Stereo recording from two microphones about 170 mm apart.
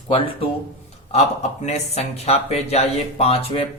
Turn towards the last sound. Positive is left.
turn(degrees=35)  # may be behind; listen again after turning